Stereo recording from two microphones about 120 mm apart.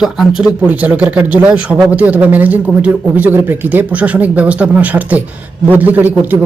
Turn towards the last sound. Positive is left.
turn(degrees=-15)  # may be behind; listen again after turning